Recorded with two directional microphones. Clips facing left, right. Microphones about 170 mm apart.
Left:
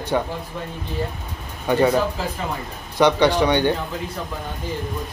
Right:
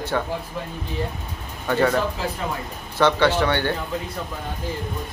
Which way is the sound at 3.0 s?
15° left (ahead or behind).